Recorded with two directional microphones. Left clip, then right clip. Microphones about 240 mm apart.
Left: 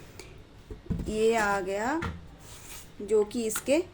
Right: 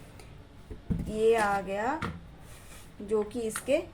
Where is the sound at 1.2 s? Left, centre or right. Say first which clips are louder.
Right 1 dB; left.